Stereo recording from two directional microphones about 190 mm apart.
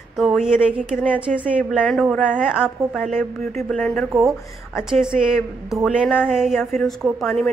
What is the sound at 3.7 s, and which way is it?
A woman's voice, 5° left (ahead or behind).